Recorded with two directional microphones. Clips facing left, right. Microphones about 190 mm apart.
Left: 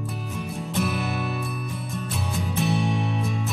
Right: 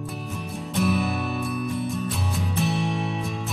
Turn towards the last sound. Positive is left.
turn(degrees=0)  # may be behind; listen again after turning